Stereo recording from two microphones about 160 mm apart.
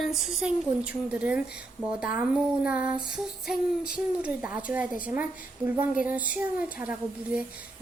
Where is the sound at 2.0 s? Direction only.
5° right (ahead or behind).